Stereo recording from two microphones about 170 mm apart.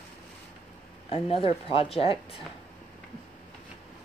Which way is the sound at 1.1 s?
35° left (ahead or behind).